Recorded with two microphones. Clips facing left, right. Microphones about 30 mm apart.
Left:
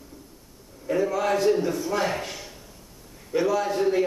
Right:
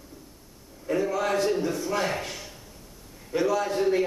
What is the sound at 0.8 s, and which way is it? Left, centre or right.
A man's voice, centre.